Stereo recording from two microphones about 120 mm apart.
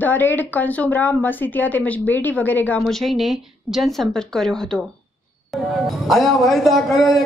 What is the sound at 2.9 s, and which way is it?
A man's voice, centre (ahead or behind).